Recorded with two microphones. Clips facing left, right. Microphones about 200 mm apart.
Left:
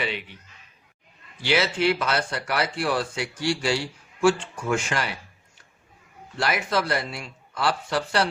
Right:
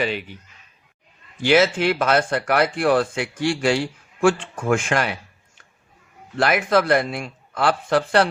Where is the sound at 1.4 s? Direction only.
50° right (ahead or behind).